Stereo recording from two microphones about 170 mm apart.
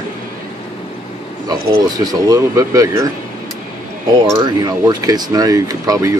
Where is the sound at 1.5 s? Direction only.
25° right (ahead or behind).